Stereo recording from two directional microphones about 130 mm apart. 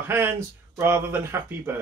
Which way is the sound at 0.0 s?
20° right (ahead or behind).